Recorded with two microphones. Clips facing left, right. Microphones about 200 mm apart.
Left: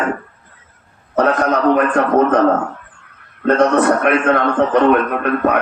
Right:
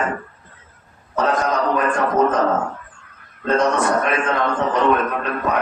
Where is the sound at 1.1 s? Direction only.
65° left (ahead or behind).